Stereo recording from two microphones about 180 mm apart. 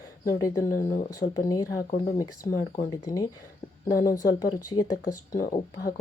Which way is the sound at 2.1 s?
20° left (ahead or behind).